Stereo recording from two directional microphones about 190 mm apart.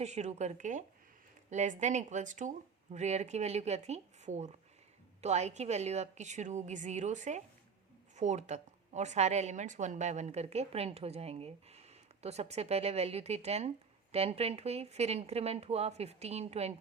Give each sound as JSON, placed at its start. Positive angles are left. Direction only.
{"t": 0.0, "sound": "a woman's voice", "side_deg": -35}